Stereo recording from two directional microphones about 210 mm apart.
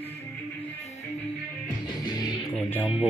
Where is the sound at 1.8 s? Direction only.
20° left (ahead or behind).